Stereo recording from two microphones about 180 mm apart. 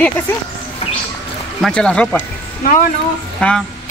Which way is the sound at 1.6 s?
5° left (ahead or behind).